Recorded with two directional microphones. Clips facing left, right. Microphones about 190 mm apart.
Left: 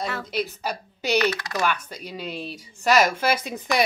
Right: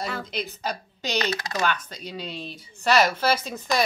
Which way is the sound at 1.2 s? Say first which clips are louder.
Left 3 dB; 25° right (ahead or behind).